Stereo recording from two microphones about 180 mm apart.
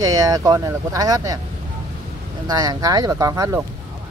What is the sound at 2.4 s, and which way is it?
Speech, 20° right (ahead or behind).